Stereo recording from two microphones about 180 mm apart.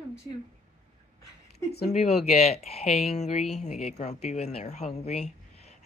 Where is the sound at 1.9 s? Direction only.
35° left (ahead or behind).